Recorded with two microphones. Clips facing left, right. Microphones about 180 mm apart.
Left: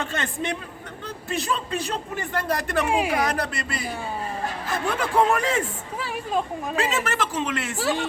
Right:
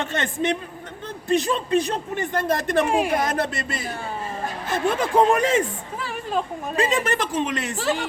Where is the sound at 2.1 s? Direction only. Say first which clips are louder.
Right 3 dB; 20° right (ahead or behind).